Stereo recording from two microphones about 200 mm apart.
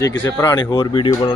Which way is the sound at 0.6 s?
20° left (ahead or behind).